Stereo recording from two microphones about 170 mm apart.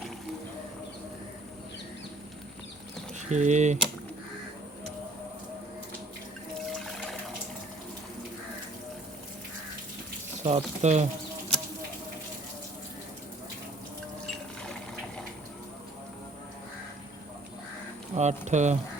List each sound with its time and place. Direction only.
3.2 s speech: 45° right (ahead or behind)
6.7 s water: centre (ahead or behind)
10.4 s speech: 40° right (ahead or behind)
18.1 s speech: 40° right (ahead or behind)